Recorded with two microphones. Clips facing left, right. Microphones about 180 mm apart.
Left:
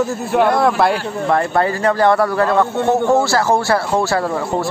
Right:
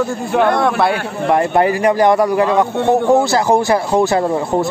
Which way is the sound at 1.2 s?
15° right (ahead or behind).